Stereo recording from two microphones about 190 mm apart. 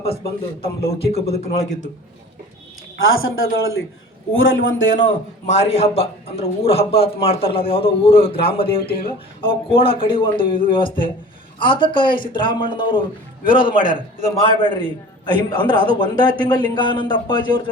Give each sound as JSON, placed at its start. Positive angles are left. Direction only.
{"t": 1.2, "sound": "a man's voice", "side_deg": 35}
{"t": 3.0, "sound": "a man's voice", "side_deg": 90}
{"t": 5.0, "sound": "a man's voice", "side_deg": 35}
{"t": 8.8, "sound": "speech", "side_deg": 50}
{"t": 9.4, "sound": "a man's voice", "side_deg": 30}